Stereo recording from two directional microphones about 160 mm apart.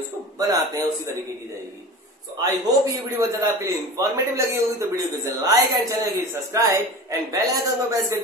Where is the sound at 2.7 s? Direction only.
20° right (ahead or behind).